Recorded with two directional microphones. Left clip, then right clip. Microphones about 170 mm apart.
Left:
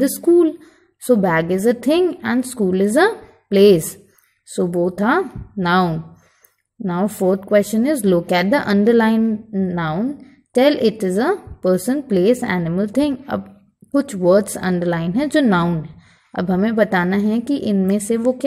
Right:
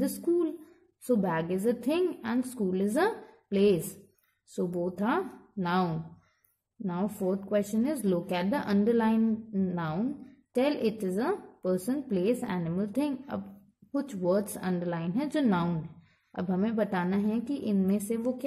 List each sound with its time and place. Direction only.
0.0 s a woman's voice: 25° left (ahead or behind)
4.8 s a woman's voice: 20° left (ahead or behind)
9.2 s a woman's voice: 10° left (ahead or behind)